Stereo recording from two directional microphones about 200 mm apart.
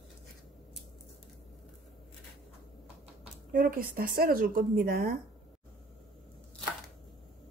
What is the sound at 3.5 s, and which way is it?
Speech, 45° right (ahead or behind).